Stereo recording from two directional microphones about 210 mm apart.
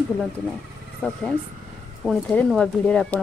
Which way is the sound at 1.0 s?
5° left (ahead or behind).